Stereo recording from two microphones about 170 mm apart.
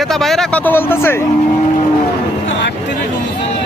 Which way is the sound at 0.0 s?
Centre (ahead or behind).